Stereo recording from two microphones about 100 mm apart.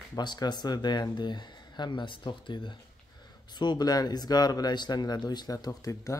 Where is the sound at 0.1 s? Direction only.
45° left (ahead or behind).